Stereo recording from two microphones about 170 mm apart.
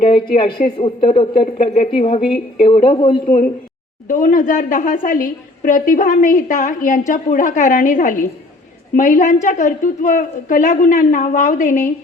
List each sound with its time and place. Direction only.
0.3 s a woman's voice: 35° left (ahead or behind)
3.2 s a woman's voice: 45° left (ahead or behind)